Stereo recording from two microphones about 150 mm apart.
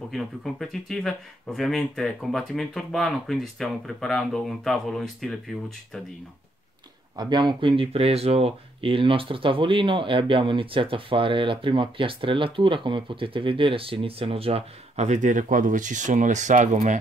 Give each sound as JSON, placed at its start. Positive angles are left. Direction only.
{"t": 0.1, "sound": "speech", "side_deg": 0}
{"t": 7.2, "sound": "speech", "side_deg": -30}